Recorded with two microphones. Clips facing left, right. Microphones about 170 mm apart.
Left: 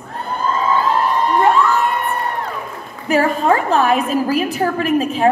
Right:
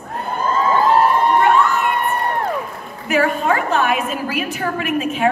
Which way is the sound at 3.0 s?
35° left (ahead or behind).